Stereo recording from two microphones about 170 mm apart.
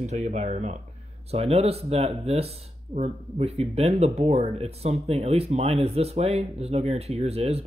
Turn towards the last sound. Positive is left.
turn(degrees=-35)  # may be behind; listen again after turning